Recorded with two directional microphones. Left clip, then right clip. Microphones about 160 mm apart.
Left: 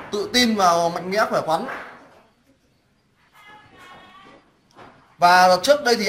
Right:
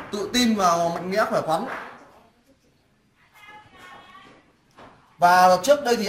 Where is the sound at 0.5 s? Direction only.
30° right (ahead or behind).